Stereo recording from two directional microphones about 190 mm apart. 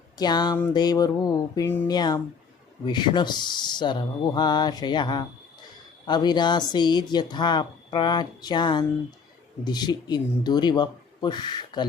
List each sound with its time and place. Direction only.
0.2 s a woman's voice: 20° left (ahead or behind)